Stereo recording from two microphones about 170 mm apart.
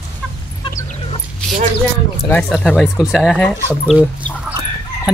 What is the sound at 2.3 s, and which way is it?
Speech, 5° left (ahead or behind).